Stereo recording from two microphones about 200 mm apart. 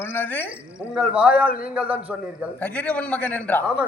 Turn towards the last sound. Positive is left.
turn(degrees=5)  # may be behind; listen again after turning